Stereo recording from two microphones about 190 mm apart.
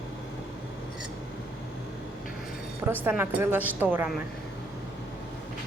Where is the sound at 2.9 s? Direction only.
10° right (ahead or behind).